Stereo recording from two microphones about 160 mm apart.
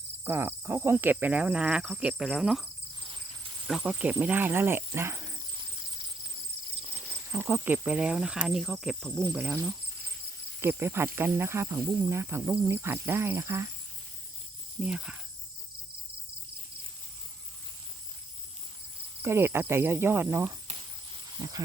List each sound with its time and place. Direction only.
0.3 s speech: 10° right (ahead or behind)
3.7 s speech: 5° right (ahead or behind)
4.9 s a sound: 15° right (ahead or behind)
7.3 s speech: 15° right (ahead or behind); by 9.2 s 5° left (ahead or behind)
9.2 s speech: 10° right (ahead or behind)
10.6 s speech: 15° right (ahead or behind)
14.8 s speech: 5° right (ahead or behind)
19.2 s speech: 15° right (ahead or behind)